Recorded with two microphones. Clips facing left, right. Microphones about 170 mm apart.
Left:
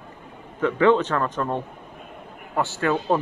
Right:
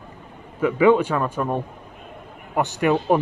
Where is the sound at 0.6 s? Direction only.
10° right (ahead or behind).